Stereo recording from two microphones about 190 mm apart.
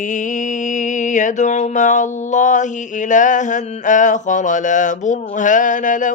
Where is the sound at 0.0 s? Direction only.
45° left (ahead or behind).